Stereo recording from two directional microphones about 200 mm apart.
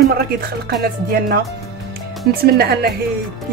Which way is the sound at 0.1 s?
50° right (ahead or behind).